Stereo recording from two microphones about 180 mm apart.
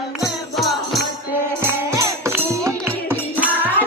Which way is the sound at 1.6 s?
15° right (ahead or behind).